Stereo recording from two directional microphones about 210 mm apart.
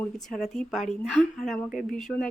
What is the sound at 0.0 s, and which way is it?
A woman's voice, centre (ahead or behind).